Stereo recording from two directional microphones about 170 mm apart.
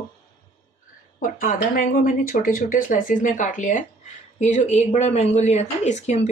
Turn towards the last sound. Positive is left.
turn(degrees=40)  # may be behind; listen again after turning